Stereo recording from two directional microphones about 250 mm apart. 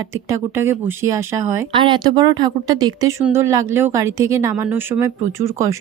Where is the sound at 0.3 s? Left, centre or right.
Centre.